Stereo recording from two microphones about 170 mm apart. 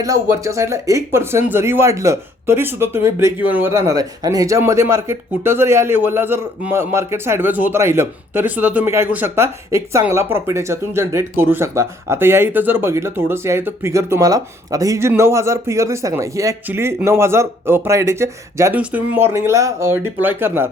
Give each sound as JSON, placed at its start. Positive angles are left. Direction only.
{"t": 0.0, "sound": "speech", "side_deg": -20}